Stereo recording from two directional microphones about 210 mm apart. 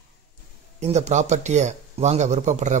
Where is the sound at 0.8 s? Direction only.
30° right (ahead or behind).